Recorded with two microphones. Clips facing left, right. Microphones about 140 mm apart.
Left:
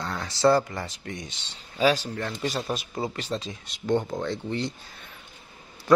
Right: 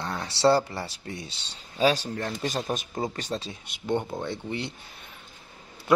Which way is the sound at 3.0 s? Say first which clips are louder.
Even; 40° right (ahead or behind).